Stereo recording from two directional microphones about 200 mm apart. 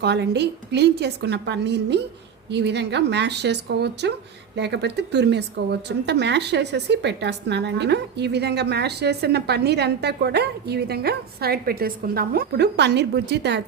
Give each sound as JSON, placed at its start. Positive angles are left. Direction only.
{"t": 0.0, "sound": "a woman's voice", "side_deg": -55}